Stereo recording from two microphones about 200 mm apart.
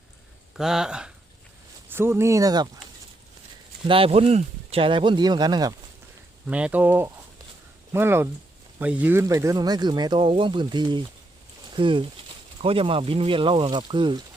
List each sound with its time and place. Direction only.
0.5 s speech: centre (ahead or behind); by 2.6 s 20° right (ahead or behind)
3.8 s speech: 25° right (ahead or behind)
6.5 s speech: 5° right (ahead or behind); by 14.3 s 25° right (ahead or behind)